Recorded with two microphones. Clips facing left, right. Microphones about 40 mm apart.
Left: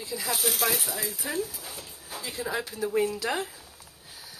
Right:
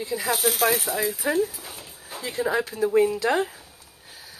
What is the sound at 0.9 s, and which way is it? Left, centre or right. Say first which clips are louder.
Speech: right 8 dB; right.